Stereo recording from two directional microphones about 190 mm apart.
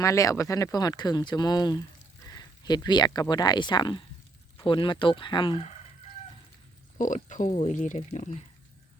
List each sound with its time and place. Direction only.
0.0 s speech: 15° left (ahead or behind)
7.0 s speech: 40° left (ahead or behind)